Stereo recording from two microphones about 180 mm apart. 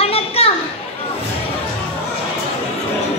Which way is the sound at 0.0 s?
30° left (ahead or behind).